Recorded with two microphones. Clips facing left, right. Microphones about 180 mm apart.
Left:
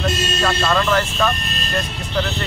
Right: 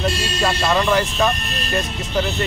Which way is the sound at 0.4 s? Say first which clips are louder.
Right 1 dB; 15° right (ahead or behind).